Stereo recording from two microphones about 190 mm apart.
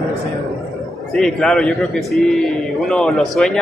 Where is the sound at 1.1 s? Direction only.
5° left (ahead or behind).